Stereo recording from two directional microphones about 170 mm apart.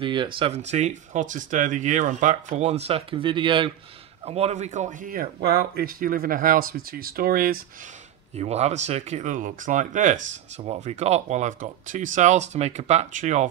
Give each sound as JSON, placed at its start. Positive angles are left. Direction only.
{"t": 0.0, "sound": "speech", "side_deg": -30}
{"t": 8.4, "sound": "speech", "side_deg": -40}